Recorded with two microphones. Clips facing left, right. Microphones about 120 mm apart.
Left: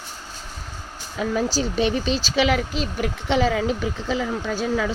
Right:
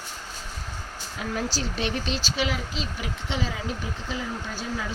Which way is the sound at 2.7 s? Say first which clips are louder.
Left 7 dB; 60° left (ahead or behind).